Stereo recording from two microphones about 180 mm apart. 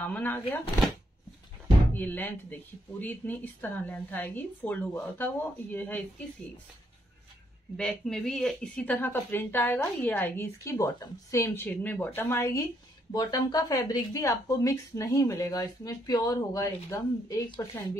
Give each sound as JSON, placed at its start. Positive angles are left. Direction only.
{"t": 0.0, "sound": "speech", "side_deg": 10}
{"t": 2.0, "sound": "speech", "side_deg": 10}
{"t": 7.7, "sound": "a woman's voice", "side_deg": 5}